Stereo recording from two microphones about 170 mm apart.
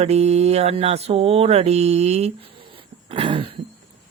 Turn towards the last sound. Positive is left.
turn(degrees=-30)  # may be behind; listen again after turning